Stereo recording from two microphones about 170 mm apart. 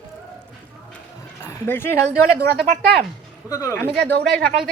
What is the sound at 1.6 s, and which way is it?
Speech, 10° left (ahead or behind).